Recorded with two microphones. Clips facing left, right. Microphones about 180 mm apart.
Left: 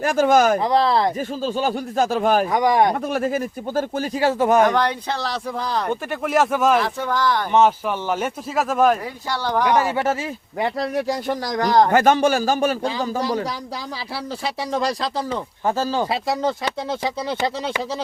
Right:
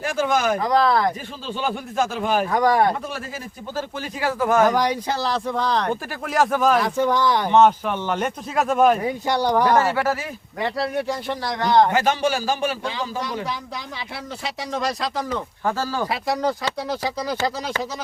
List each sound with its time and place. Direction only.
0.0 s a man's voice: 45° left (ahead or behind)
0.6 s speech: 25° left (ahead or behind)
1.4 s speech: 40° left (ahead or behind)
2.5 s speech: 15° left (ahead or behind)
3.1 s speech: 55° left (ahead or behind)
4.2 s speech: 25° left (ahead or behind)
4.6 s speech: 10° right (ahead or behind)
7.1 s speech: 20° right (ahead or behind)
7.5 s speech: 5° left (ahead or behind)
9.0 s speech: 20° right (ahead or behind)
9.6 s speech: 15° left (ahead or behind)
11.3 s a man's voice: 40° left (ahead or behind); by 17.5 s 25° left (ahead or behind)